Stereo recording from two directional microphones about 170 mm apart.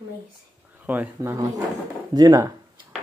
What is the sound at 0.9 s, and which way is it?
Speech, 10° right (ahead or behind).